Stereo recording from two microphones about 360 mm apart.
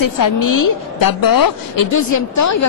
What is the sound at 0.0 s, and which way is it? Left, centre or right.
A woman's voice, left.